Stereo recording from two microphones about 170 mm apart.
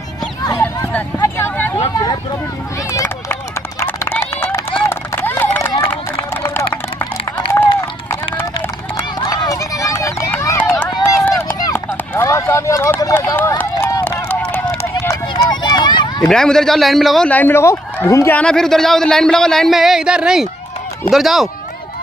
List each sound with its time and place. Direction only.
0.4 s a sound: 20° left (ahead or behind)
1.2 s vehicle: 15° left (ahead or behind)
2.9 s run: 15° left (ahead or behind)
8.9 s run: 20° left (ahead or behind)
11.2 s run: 10° left (ahead or behind); by 16.3 s 25° left (ahead or behind)
16.3 s speech: 5° left (ahead or behind)
18.4 s speech: 5° left (ahead or behind)